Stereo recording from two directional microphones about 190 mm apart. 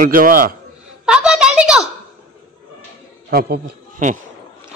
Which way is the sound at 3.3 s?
55° right (ahead or behind).